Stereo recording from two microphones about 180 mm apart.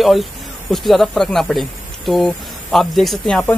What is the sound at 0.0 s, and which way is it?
Speech, centre (ahead or behind).